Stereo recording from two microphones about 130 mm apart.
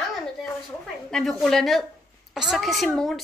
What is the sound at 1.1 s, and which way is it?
A woman's voice, 5° left (ahead or behind).